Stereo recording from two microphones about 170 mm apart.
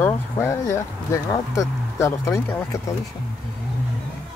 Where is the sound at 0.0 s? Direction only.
15° left (ahead or behind).